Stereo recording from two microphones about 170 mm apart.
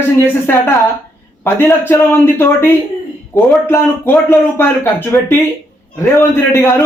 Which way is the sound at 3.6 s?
15° left (ahead or behind).